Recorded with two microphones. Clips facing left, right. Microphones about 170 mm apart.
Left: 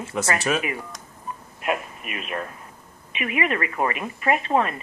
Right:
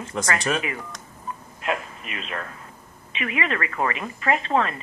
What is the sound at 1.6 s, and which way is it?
A man's voice, 15° left (ahead or behind).